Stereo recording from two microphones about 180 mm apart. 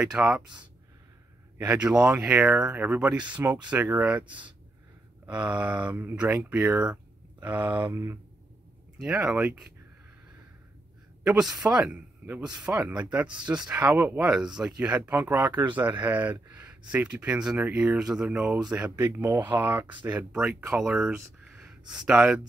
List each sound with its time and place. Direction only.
0.0 s speech: 5° right (ahead or behind)
1.8 s speech: 5° right (ahead or behind)
5.6 s speech: 5° right (ahead or behind)
8.9 s speech: 5° right (ahead or behind)
11.2 s speech: 5° right (ahead or behind)